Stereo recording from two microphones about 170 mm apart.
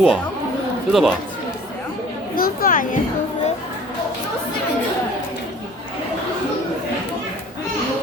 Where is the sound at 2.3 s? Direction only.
60° left (ahead or behind).